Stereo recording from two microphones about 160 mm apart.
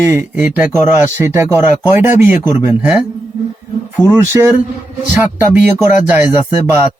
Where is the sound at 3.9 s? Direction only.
15° right (ahead or behind).